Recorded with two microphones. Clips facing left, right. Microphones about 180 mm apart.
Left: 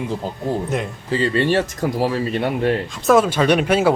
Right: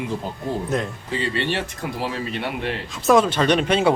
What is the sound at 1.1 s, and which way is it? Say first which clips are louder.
Speech: left 7 dB; 40° left (ahead or behind).